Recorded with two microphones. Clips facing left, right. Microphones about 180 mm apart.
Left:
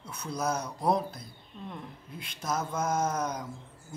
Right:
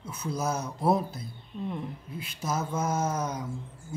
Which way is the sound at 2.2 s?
5° right (ahead or behind).